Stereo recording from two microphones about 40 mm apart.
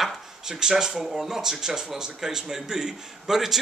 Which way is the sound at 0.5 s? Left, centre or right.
Centre.